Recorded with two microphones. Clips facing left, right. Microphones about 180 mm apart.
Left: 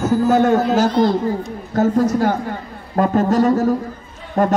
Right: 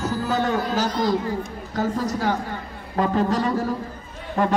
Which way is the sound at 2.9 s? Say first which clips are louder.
Left 6 dB; 45° left (ahead or behind).